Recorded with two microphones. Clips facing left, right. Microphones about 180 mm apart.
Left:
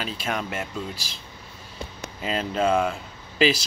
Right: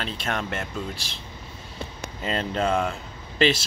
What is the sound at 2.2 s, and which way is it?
Speech, 5° left (ahead or behind).